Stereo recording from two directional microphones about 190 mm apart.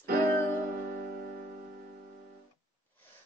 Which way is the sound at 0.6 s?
50° right (ahead or behind).